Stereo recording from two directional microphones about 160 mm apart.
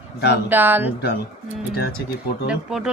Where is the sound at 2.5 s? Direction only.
5° right (ahead or behind).